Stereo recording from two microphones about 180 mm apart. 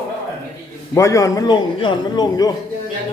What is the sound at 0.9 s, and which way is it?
A man's voice, 15° left (ahead or behind).